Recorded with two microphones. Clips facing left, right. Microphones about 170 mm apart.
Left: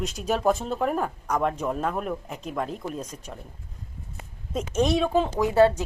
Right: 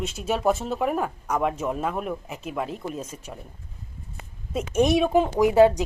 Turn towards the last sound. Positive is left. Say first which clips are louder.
# right 3 dB
turn(degrees=-15)  # may be behind; listen again after turning